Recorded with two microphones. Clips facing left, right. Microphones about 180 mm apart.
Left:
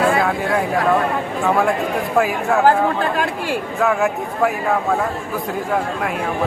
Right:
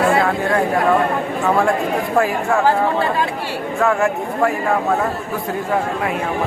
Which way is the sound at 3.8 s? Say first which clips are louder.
Right 2 dB; centre (ahead or behind).